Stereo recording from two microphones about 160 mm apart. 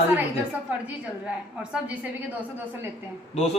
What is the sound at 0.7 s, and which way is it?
Speech, 10° right (ahead or behind).